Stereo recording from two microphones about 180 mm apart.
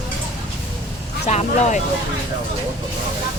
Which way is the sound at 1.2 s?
40° left (ahead or behind).